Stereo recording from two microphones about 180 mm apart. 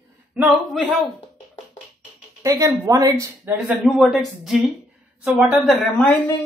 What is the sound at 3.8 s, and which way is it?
A woman's voice, centre (ahead or behind).